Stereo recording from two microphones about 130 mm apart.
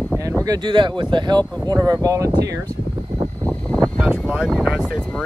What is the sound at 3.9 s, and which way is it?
Speech, 10° right (ahead or behind).